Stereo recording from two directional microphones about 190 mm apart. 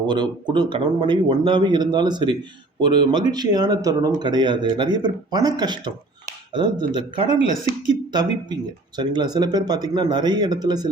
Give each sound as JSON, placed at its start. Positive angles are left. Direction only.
{"t": 0.1, "sound": "a man's voice", "side_deg": -25}